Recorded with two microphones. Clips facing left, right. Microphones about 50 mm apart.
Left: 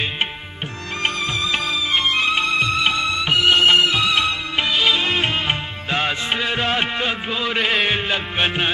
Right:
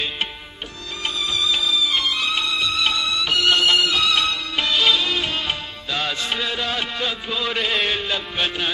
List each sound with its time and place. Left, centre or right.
1.0 s music: left; by 4.9 s centre
4.9 s music: left